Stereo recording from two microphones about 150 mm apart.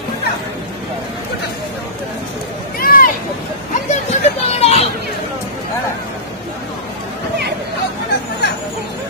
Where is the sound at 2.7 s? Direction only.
70° left (ahead or behind).